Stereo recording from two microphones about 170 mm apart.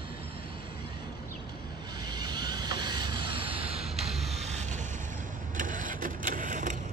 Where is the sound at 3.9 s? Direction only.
Centre (ahead or behind).